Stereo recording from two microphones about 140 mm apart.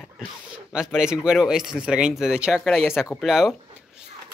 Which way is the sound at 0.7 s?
5° right (ahead or behind).